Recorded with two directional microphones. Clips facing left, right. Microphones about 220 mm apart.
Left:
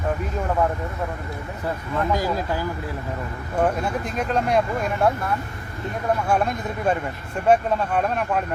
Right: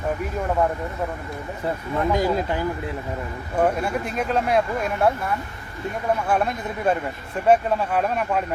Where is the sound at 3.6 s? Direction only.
5° right (ahead or behind).